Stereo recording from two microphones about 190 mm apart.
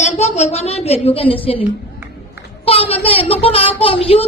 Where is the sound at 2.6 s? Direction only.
30° left (ahead or behind).